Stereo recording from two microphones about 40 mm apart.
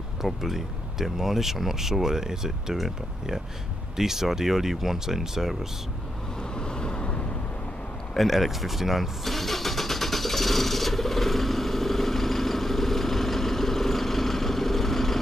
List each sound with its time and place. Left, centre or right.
0.2 s speech: centre
3.9 s speech: centre
6.5 s vehicle: centre
8.2 s vehicle: centre